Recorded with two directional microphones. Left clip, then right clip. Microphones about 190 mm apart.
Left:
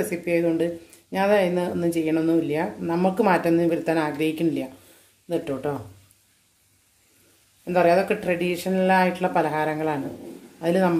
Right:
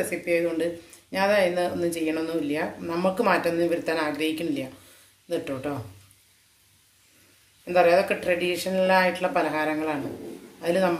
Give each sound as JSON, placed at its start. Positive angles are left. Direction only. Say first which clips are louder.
{"t": 0.0, "sound": "speech", "louder": "left 2 dB", "side_deg": 55}
{"t": 7.6, "sound": "speech", "louder": "even", "side_deg": 55}